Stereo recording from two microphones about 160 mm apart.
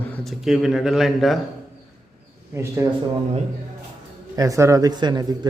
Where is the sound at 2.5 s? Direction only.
15° right (ahead or behind).